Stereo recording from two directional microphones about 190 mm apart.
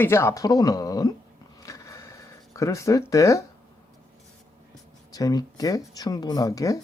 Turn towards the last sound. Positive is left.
turn(degrees=20)  # may be behind; listen again after turning